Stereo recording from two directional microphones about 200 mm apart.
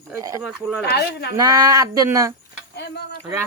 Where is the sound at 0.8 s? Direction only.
55° left (ahead or behind).